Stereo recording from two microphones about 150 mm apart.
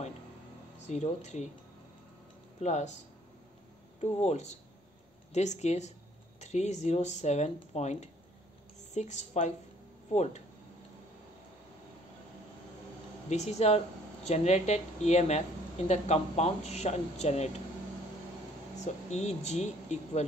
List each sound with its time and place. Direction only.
0.8 s speech: 50° left (ahead or behind)
2.6 s speech: 50° left (ahead or behind)
4.0 s speech: 50° left (ahead or behind)
13.3 s speech: 50° left (ahead or behind)
18.8 s speech: 50° left (ahead or behind)